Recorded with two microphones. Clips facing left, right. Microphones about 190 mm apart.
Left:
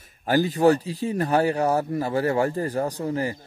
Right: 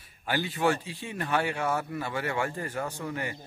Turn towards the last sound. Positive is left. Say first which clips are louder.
# left 8 dB
turn(degrees=35)  # may be behind; listen again after turning